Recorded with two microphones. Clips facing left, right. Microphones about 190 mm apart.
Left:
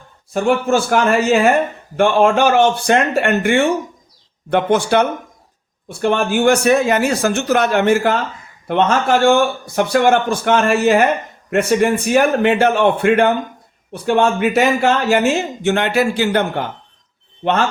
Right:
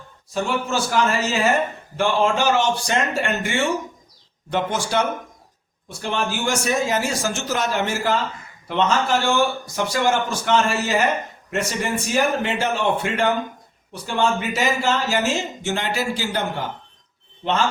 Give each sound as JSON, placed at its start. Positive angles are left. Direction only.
{"t": 0.3, "sound": "speech", "side_deg": 55}